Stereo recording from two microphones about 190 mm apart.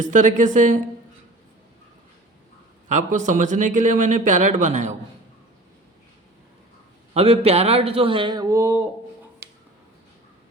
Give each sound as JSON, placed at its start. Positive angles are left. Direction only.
{"t": 0.0, "sound": "a man's voice", "side_deg": -40}
{"t": 2.9, "sound": "a man's voice", "side_deg": -40}
{"t": 7.1, "sound": "a man's voice", "side_deg": -30}